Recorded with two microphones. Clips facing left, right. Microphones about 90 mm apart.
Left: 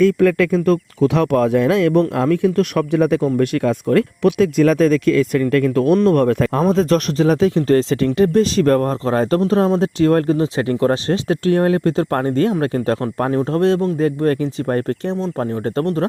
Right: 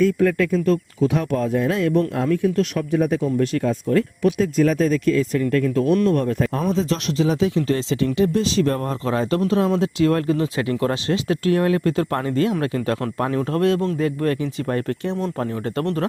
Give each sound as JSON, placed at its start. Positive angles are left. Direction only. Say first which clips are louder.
{"t": 0.0, "sound": "speech", "louder": "left 4 dB", "side_deg": 90}
{"t": 3.3, "sound": "speech", "louder": "left 3 dB", "side_deg": 70}
{"t": 7.2, "sound": "speech", "louder": "left 2 dB", "side_deg": 45}